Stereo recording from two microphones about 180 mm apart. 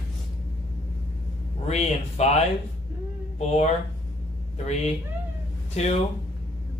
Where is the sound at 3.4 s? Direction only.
35° left (ahead or behind).